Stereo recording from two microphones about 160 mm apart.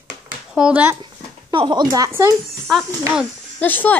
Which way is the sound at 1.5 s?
30° right (ahead or behind).